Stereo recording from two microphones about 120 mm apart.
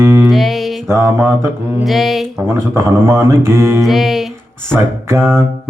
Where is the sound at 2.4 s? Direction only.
25° right (ahead or behind).